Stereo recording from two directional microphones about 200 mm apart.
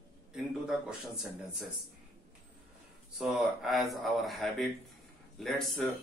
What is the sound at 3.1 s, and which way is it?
Speech, centre (ahead or behind).